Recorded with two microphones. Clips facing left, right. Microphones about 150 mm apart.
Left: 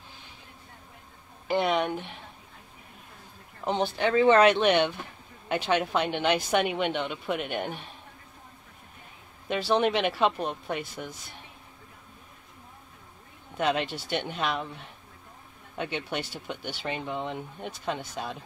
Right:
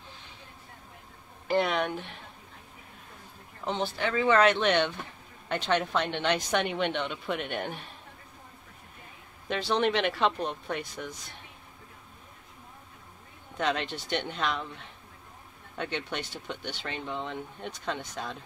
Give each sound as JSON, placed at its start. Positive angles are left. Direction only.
{"t": 1.5, "sound": "speech", "side_deg": 0}
{"t": 3.6, "sound": "speech", "side_deg": 15}
{"t": 9.5, "sound": "speech", "side_deg": 5}
{"t": 13.6, "sound": "speech", "side_deg": 10}
{"t": 15.8, "sound": "speech", "side_deg": 10}